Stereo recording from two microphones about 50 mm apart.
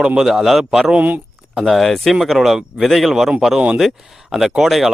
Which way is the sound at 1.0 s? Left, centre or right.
Right.